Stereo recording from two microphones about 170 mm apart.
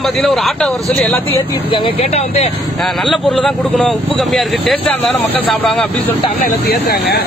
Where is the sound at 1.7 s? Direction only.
35° left (ahead or behind).